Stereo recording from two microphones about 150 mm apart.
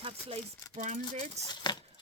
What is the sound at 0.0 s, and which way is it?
Speech, 35° right (ahead or behind).